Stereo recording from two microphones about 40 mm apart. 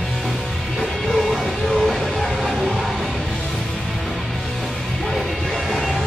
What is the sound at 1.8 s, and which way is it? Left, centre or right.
Music, centre.